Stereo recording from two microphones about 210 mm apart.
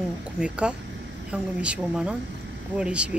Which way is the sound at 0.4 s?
5° right (ahead or behind).